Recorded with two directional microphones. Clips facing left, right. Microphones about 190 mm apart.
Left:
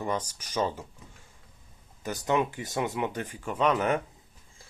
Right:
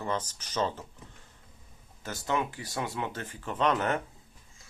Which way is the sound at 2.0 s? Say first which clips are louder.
Left 4 dB; 15° left (ahead or behind).